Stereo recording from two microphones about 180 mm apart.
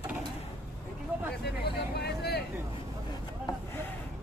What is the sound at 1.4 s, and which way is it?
Vehicle, 65° left (ahead or behind).